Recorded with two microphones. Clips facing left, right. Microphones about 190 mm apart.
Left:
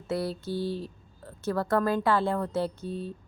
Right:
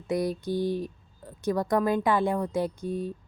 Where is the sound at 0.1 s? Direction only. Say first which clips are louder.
Right 3 dB; 15° right (ahead or behind).